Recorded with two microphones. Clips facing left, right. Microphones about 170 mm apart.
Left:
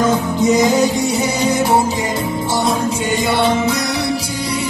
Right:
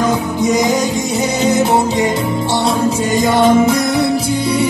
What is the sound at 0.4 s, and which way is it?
Music, 15° right (ahead or behind).